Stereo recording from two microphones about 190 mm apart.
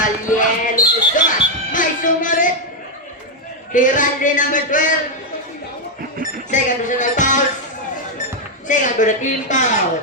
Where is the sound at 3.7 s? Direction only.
45° left (ahead or behind).